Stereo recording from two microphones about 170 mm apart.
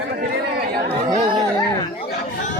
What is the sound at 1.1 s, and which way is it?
Speech, 30° right (ahead or behind).